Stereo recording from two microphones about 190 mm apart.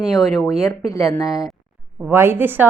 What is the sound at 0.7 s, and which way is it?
Speech, 15° left (ahead or behind).